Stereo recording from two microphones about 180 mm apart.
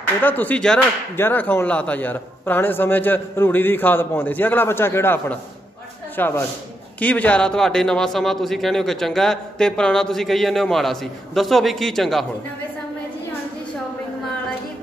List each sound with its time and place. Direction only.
0.2 s a man's voice: 10° left (ahead or behind)